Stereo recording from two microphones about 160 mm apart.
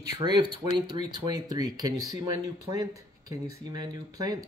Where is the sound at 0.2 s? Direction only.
30° right (ahead or behind).